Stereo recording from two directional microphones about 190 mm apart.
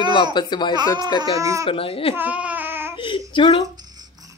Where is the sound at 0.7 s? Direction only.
20° right (ahead or behind).